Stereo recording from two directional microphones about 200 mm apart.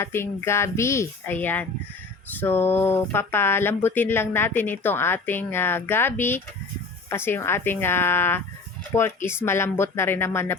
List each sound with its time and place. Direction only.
0.0 s speech: 10° left (ahead or behind)